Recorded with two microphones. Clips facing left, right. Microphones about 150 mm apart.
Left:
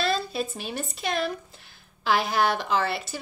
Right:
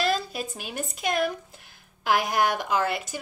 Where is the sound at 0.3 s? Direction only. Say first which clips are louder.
Left 3 dB; 10° right (ahead or behind).